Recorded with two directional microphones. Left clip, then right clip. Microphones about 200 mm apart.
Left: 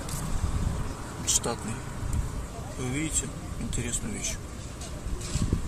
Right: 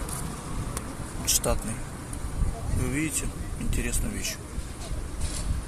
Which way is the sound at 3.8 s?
5° right (ahead or behind).